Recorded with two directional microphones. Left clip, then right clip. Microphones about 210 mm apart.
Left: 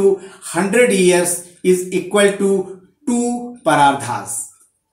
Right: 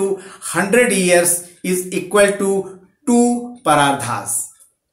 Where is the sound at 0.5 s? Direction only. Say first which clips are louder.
Even; 15° right (ahead or behind).